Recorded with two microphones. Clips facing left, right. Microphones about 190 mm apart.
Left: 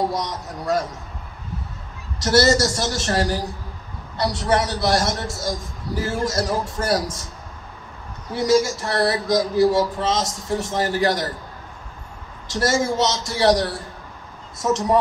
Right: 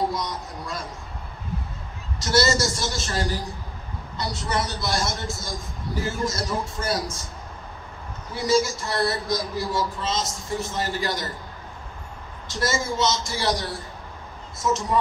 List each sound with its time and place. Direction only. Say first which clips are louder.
0.1 s a man's voice: left 3 dB; 75° left (ahead or behind)
2.1 s a man's voice: left 5 dB; 70° left (ahead or behind)
8.3 s a man's voice: left 4 dB; 75° left (ahead or behind)
12.4 s a man's voice: left 5 dB; 75° left (ahead or behind)